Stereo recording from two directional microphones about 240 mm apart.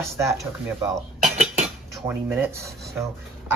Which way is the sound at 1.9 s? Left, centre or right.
Centre.